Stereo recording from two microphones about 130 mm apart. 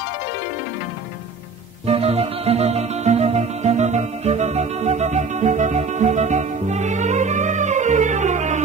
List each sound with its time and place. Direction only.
1.9 s music: 50° right (ahead or behind); by 8.6 s 65° right (ahead or behind)